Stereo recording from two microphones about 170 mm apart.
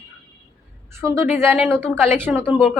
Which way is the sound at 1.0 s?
15° right (ahead or behind).